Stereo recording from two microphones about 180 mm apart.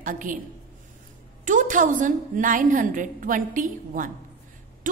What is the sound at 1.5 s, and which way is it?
A woman's voice, 45° right (ahead or behind).